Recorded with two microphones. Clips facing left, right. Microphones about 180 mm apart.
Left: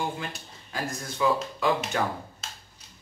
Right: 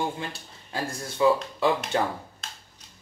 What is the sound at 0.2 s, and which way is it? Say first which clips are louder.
Speech: right 1 dB; 30° right (ahead or behind).